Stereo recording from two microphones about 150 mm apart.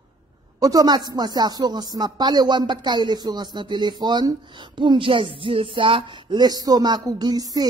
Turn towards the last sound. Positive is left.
turn(degrees=-25)  # may be behind; listen again after turning